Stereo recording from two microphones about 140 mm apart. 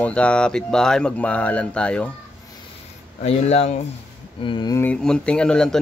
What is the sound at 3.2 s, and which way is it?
Speech, 50° left (ahead or behind).